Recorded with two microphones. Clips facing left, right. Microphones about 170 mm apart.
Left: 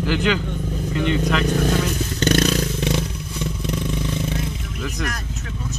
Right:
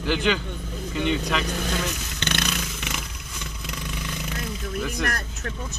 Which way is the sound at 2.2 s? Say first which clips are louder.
Left 10 dB; 40° left (ahead or behind).